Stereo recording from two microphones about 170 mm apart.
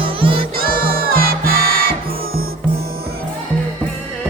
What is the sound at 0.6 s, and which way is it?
Music, 60° right (ahead or behind).